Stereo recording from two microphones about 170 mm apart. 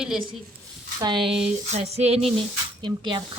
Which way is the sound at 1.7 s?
40° right (ahead or behind).